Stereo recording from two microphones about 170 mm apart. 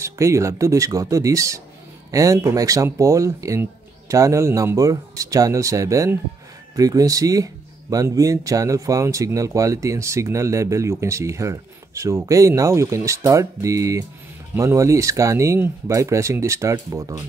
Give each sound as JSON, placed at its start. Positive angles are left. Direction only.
{"t": 0.0, "sound": "speech", "side_deg": -15}